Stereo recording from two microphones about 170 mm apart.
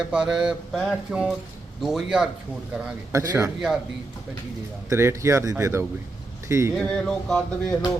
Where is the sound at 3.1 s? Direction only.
20° right (ahead or behind).